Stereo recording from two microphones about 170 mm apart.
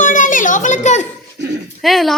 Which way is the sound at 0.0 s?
50° left (ahead or behind).